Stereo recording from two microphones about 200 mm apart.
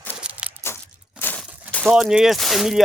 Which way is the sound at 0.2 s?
5° right (ahead or behind).